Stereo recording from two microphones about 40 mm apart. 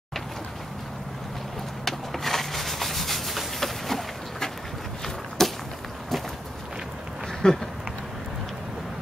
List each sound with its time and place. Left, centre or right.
1.9 s rub: centre
5.4 s a sound: centre
7.4 s speech: left